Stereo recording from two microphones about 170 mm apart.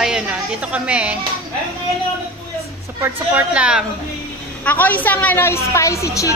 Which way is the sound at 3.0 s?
10° right (ahead or behind).